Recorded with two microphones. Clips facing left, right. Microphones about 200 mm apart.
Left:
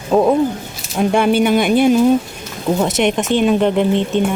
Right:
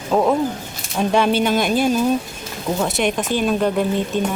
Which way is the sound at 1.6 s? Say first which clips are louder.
Left 5 dB; 60° left (ahead or behind).